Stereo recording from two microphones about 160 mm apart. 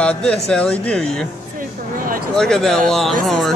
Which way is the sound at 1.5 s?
60° right (ahead or behind).